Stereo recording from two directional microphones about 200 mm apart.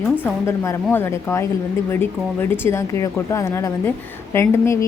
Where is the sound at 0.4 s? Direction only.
15° left (ahead or behind).